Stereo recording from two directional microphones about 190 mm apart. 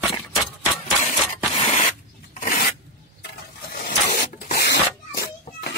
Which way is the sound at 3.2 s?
50° left (ahead or behind).